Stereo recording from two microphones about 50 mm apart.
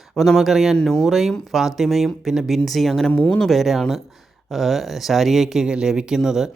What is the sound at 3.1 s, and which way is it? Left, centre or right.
Speech, left.